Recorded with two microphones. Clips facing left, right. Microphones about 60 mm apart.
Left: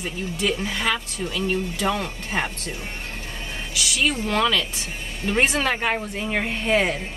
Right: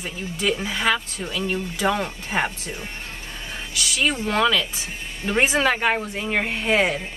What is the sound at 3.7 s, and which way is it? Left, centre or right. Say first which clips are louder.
A woman's voice: even; centre.